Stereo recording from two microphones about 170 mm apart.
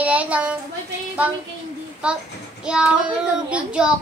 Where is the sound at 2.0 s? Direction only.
5° right (ahead or behind).